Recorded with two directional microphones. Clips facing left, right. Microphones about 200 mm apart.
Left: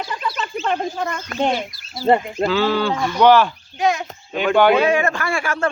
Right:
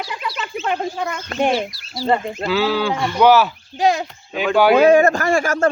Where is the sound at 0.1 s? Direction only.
5° right (ahead or behind).